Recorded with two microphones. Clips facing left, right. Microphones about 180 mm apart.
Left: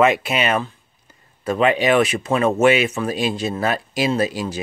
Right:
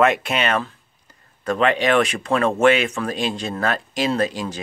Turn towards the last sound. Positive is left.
turn(degrees=5)  # may be behind; listen again after turning